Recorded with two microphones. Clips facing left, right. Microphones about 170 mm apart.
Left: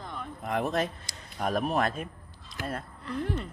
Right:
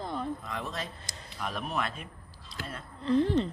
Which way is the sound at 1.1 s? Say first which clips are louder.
Right 1 dB; 50° right (ahead or behind).